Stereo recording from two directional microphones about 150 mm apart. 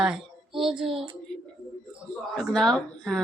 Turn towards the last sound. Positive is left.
turn(degrees=5)  # may be behind; listen again after turning